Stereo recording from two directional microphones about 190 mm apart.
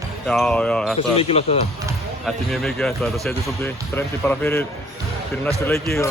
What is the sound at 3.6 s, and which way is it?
Speech, 10° left (ahead or behind).